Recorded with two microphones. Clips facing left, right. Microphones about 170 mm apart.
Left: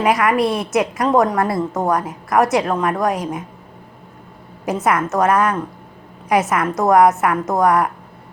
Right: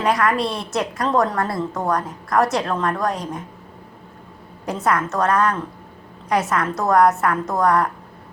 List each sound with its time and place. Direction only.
0.0 s a woman's voice: 20° left (ahead or behind)
4.6 s a woman's voice: 20° left (ahead or behind)